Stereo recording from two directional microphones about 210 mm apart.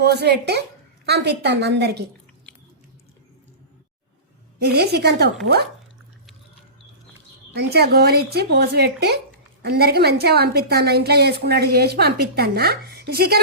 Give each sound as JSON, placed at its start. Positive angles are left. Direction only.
{"t": 0.0, "sound": "a woman's voice", "side_deg": -50}
{"t": 4.6, "sound": "a woman's voice", "side_deg": -50}
{"t": 7.5, "sound": "a woman's voice", "side_deg": -50}